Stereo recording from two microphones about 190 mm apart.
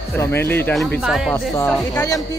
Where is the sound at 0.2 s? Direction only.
10° left (ahead or behind).